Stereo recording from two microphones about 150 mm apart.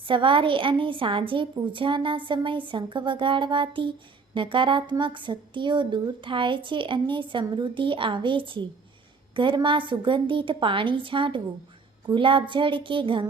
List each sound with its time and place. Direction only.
0.0 s speech: 35° right (ahead or behind)